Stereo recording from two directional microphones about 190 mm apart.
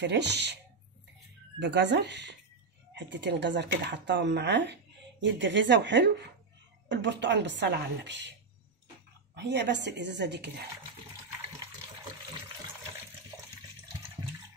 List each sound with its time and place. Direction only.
0.0 s a woman's voice: 65° right (ahead or behind)
1.6 s a woman's voice: 65° right (ahead or behind)